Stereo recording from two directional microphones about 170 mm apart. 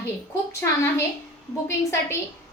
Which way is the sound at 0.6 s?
15° left (ahead or behind).